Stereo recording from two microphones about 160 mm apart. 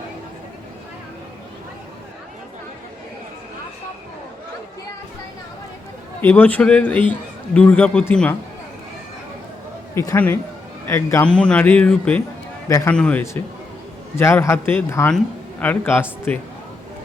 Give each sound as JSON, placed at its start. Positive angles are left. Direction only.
{"t": 6.2, "sound": "a man's voice", "side_deg": 10}
{"t": 9.9, "sound": "a man's voice", "side_deg": 20}
{"t": 11.3, "sound": "a man's voice", "side_deg": 5}
{"t": 12.6, "sound": "a man's voice", "side_deg": 20}
{"t": 12.9, "sound": "a man's voice", "side_deg": 10}